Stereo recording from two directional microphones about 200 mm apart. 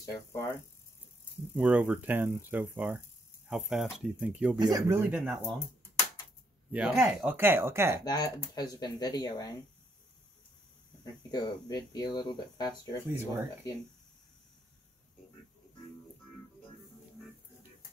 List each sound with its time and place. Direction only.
0.0 s speech: 15° left (ahead or behind)
1.5 s speech: 10° right (ahead or behind)
4.6 s speech: 20° right (ahead or behind)
6.7 s speech: 5° right (ahead or behind)
8.0 s speech: 20° left (ahead or behind)
11.3 s speech: 20° left (ahead or behind)
13.1 s speech: 10° right (ahead or behind)